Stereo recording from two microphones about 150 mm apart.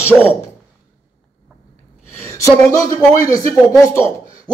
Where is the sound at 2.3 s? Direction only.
20° left (ahead or behind).